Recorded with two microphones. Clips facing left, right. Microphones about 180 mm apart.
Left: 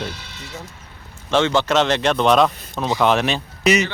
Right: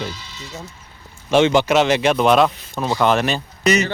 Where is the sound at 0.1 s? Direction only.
65° left (ahead or behind).